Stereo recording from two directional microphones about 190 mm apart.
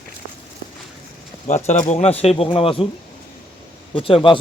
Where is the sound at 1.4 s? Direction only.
40° left (ahead or behind).